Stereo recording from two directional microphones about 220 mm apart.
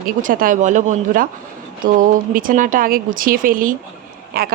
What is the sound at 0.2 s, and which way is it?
Speech, 40° right (ahead or behind).